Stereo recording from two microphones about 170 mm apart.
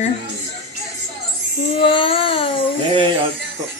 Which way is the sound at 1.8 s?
30° left (ahead or behind).